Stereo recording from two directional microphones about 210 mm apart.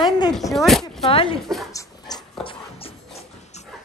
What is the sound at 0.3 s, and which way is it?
Speech, centre (ahead or behind).